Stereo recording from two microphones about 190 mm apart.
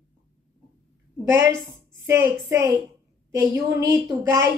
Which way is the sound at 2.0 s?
15° right (ahead or behind).